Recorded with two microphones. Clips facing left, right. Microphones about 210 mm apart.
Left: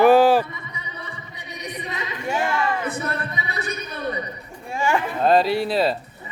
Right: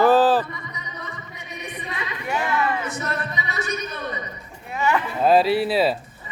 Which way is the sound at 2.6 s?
55° left (ahead or behind).